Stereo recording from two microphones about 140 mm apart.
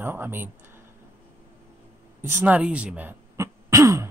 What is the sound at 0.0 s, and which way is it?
Speech, 15° right (ahead or behind).